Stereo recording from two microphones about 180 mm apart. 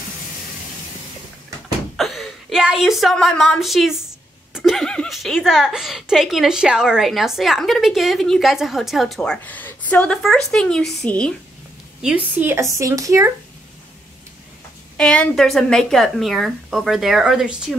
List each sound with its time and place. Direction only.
2.0 s a woman's voice: centre (ahead or behind)
12.0 s a woman's voice: 5° right (ahead or behind)
15.0 s a woman's voice: 5° left (ahead or behind)